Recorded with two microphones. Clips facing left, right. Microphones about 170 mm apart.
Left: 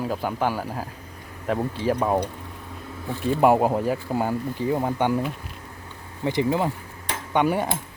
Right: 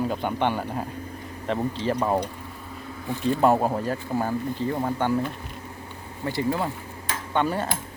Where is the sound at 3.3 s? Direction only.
10° left (ahead or behind).